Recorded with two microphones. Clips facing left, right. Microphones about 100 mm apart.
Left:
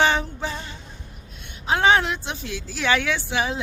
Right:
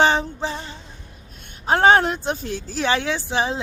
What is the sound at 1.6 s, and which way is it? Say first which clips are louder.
A woman's voice: right 4 dB; 45° right (ahead or behind).